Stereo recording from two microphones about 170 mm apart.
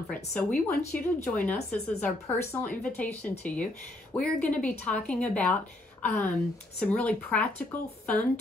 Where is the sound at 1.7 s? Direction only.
10° left (ahead or behind).